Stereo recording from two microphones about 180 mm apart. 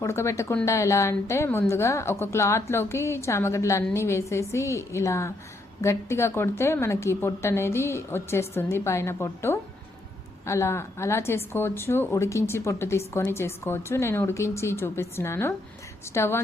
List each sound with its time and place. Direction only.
0.0 s a woman's voice: 15° left (ahead or behind)